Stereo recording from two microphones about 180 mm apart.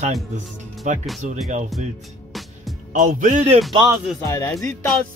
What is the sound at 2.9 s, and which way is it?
Speech, 45° right (ahead or behind).